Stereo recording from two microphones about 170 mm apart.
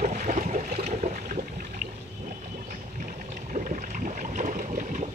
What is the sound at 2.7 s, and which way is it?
Boat, 50° right (ahead or behind).